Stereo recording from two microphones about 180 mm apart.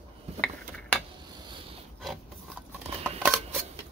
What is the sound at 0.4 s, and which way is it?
Mechanisms, 5° left (ahead or behind).